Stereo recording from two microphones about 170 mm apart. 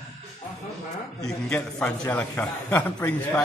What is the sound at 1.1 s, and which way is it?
A man's voice, 5° left (ahead or behind).